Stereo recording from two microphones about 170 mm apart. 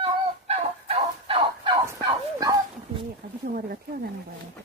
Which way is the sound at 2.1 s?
25° right (ahead or behind).